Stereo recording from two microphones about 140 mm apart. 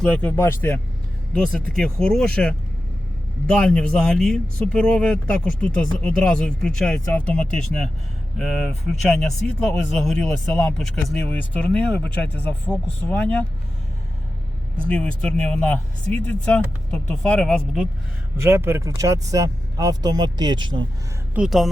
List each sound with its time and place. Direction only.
0.0 s speech: 10° left (ahead or behind)
1.3 s speech: 5° left (ahead or behind)
14.8 s speech: 5° left (ahead or behind)
18.4 s speech: 15° right (ahead or behind); by 20.8 s 35° right (ahead or behind)
21.3 s speech: 5° right (ahead or behind)